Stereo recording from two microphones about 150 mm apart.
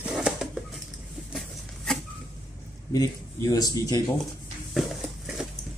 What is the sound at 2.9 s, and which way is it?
Speech, 20° left (ahead or behind).